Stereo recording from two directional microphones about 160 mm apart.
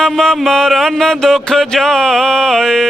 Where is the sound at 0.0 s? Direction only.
5° left (ahead or behind).